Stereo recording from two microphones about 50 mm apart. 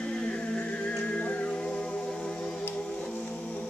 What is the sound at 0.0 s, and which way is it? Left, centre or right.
Music, centre.